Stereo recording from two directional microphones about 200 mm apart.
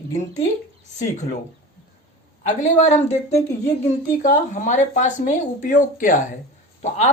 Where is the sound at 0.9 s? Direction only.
35° left (ahead or behind).